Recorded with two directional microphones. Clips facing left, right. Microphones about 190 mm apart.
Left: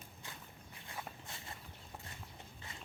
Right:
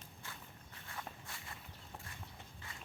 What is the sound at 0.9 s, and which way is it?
Walk, 20° left (ahead or behind).